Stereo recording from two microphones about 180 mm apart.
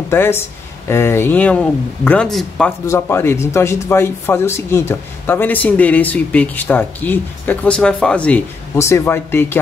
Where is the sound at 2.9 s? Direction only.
15° left (ahead or behind).